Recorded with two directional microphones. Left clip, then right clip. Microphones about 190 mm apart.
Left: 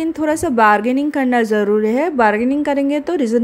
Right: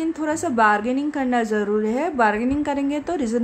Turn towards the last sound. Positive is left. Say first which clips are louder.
# left 7 dB
turn(degrees=25)  # may be behind; listen again after turning